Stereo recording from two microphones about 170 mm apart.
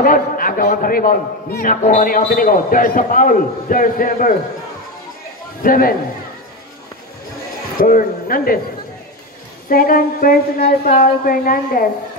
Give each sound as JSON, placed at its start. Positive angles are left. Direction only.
{"t": 0.0, "sound": "a man's voice", "side_deg": 55}
{"t": 5.6, "sound": "a man's voice", "side_deg": 55}
{"t": 7.8, "sound": "a man's voice", "side_deg": 55}
{"t": 9.7, "sound": "a man's voice", "side_deg": 60}